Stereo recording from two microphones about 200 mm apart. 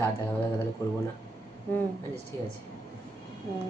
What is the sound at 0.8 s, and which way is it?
Speech, 15° left (ahead or behind).